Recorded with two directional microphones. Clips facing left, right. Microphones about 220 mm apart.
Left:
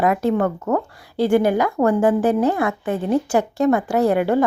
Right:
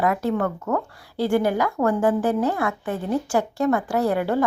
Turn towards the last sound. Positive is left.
turn(degrees=20)  # may be behind; listen again after turning